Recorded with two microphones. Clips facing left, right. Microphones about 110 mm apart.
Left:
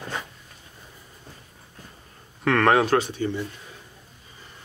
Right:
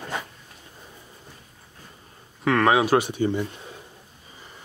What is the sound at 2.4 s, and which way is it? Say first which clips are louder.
Speech: even; centre (ahead or behind).